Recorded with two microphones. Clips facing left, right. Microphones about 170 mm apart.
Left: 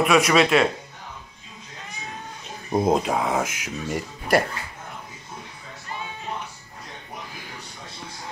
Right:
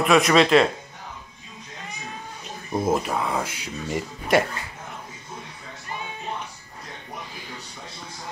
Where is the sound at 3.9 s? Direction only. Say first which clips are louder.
Even; centre (ahead or behind).